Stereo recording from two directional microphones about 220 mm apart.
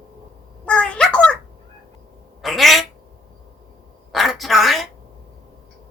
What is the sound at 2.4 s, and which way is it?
Quack, centre (ahead or behind).